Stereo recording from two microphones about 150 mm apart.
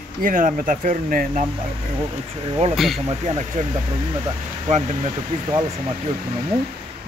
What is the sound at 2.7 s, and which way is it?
Speech, centre (ahead or behind).